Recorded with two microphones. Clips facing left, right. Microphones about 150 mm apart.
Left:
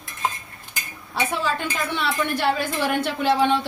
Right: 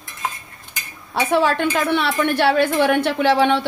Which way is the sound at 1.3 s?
70° right (ahead or behind).